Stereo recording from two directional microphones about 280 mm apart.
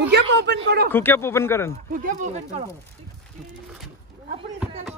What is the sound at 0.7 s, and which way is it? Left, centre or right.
Speech, right.